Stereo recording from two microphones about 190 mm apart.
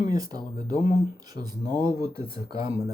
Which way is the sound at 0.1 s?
20° right (ahead or behind).